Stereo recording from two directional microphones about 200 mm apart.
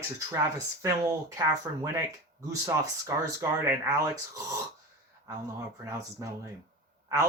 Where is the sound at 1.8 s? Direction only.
15° right (ahead or behind).